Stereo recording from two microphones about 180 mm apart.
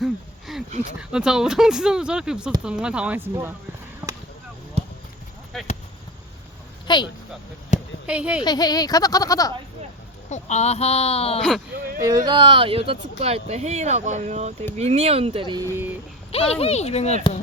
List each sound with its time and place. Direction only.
0.0 s a sound: centre (ahead or behind)
0.9 s speech: 5° right (ahead or behind)
4.0 s a sound: 10° right (ahead or behind)
5.5 s speech: centre (ahead or behind)
6.8 s a sound: 25° left (ahead or behind)
8.0 s speech: 5° right (ahead or behind)
8.4 s speech: 20° left (ahead or behind)
10.2 s speech: 40° left (ahead or behind)
11.3 s speech: 5° left (ahead or behind)
11.9 s speech: 20° right (ahead or behind)
16.3 s speech: 35° left (ahead or behind)